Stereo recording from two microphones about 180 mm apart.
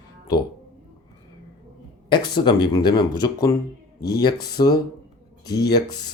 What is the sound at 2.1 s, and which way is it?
Speech, 25° left (ahead or behind).